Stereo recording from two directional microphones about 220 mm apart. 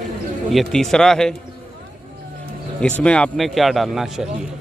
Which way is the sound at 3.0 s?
5° left (ahead or behind).